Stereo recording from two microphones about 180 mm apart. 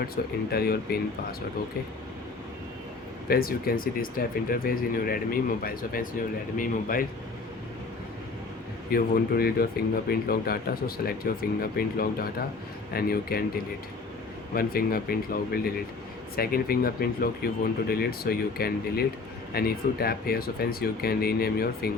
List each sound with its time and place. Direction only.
0.2 s speech: 60° left (ahead or behind)
3.2 s speech: 55° left (ahead or behind)
8.9 s speech: 55° left (ahead or behind)
14.5 s speech: 55° left (ahead or behind)